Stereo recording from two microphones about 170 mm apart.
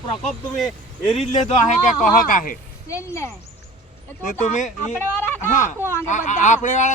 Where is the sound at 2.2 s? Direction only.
50° left (ahead or behind).